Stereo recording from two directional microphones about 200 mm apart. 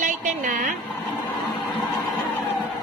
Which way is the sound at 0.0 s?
40° right (ahead or behind).